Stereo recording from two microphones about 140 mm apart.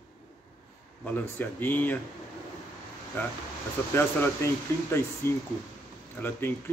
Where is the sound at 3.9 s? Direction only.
20° left (ahead or behind).